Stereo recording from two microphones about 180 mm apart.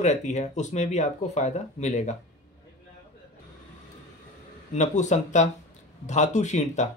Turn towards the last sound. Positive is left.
turn(degrees=40)  # may be behind; listen again after turning